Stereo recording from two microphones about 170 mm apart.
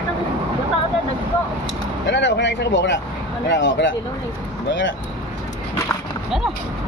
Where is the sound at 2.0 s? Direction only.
90° left.